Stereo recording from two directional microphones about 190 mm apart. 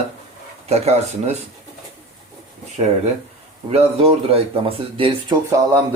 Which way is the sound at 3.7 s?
30° right (ahead or behind).